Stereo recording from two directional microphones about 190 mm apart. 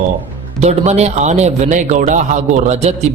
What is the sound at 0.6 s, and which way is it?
A man's voice, 35° right (ahead or behind).